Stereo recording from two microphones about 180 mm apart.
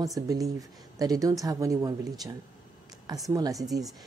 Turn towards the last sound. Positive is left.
turn(degrees=-20)  # may be behind; listen again after turning